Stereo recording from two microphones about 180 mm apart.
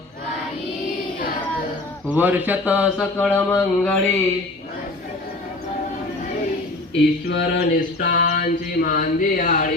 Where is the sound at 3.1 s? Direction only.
10° left (ahead or behind).